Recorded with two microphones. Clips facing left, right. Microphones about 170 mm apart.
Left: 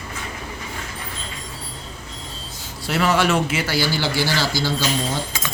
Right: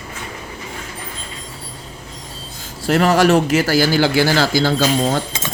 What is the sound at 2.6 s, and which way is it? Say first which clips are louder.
A man's voice: right 6 dB; 40° right (ahead or behind).